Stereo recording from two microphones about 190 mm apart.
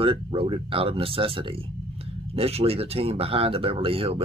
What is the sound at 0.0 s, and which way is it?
Speech, 30° right (ahead or behind).